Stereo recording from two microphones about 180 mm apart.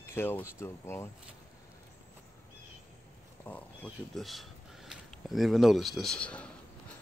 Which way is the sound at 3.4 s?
5° left (ahead or behind).